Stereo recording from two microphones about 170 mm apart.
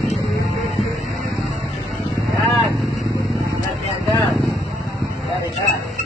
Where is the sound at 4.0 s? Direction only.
20° left (ahead or behind).